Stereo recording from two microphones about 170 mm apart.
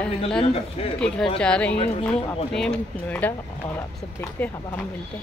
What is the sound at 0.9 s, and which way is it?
A woman's voice, 5° left (ahead or behind).